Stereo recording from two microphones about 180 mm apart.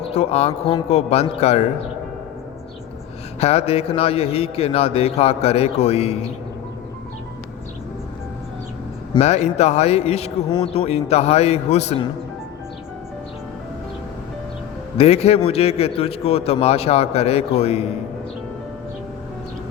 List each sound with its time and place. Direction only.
0.1 s a man's voice: 35° left (ahead or behind)
3.4 s a man's voice: 35° left (ahead or behind)
9.1 s a man's voice: 40° left (ahead or behind)
14.9 s a man's voice: 35° left (ahead or behind)